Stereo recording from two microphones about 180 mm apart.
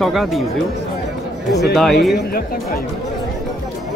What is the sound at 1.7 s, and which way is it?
Speech, centre (ahead or behind).